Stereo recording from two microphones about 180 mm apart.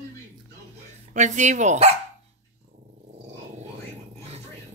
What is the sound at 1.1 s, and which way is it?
Speech, 40° right (ahead or behind).